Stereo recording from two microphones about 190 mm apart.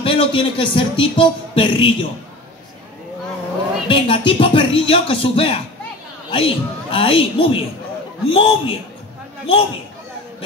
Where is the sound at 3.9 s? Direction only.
25° left (ahead or behind).